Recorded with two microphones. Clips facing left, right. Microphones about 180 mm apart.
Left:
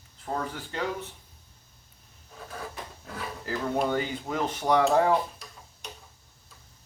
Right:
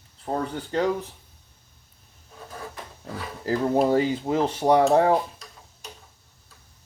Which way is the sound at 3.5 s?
35° right (ahead or behind).